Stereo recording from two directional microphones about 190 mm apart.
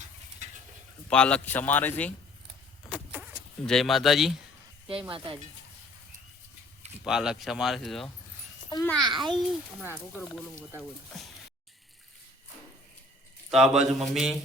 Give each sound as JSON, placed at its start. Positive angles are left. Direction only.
{"t": 1.1, "sound": "speech", "side_deg": 5}
{"t": 2.9, "sound": "a sound", "side_deg": -5}
{"t": 3.7, "sound": "speech", "side_deg": 0}
{"t": 4.9, "sound": "speech", "side_deg": -30}
{"t": 7.0, "sound": "speech", "side_deg": -5}
{"t": 9.0, "sound": "speech", "side_deg": -25}
{"t": 11.1, "sound": "a sound", "side_deg": 0}
{"t": 13.5, "sound": "speech", "side_deg": -5}